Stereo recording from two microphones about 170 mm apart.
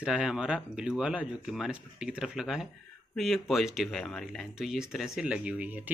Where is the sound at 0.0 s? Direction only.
5° right (ahead or behind).